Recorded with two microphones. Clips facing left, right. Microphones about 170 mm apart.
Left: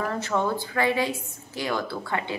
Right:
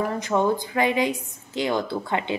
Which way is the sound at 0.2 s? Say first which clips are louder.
Right 4 dB; 15° right (ahead or behind).